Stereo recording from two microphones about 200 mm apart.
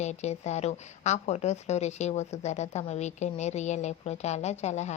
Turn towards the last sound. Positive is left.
turn(degrees=35)  # may be behind; listen again after turning